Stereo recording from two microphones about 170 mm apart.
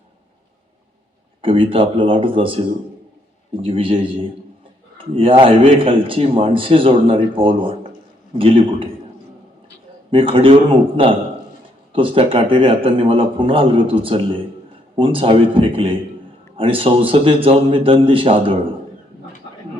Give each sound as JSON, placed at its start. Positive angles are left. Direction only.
{"t": 1.4, "sound": "a man's voice", "side_deg": -30}
{"t": 10.1, "sound": "a man's voice", "side_deg": -30}